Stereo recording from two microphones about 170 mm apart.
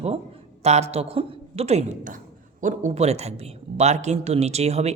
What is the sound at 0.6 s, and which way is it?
A man's voice, 40° right (ahead or behind).